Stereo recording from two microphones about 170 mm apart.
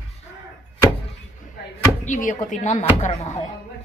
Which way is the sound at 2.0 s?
50° left (ahead or behind).